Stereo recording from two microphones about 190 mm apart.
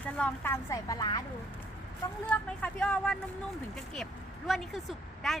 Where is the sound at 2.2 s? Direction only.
5° left (ahead or behind).